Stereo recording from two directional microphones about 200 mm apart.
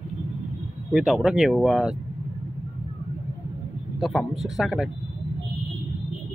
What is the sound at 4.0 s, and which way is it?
Speech, centre (ahead or behind).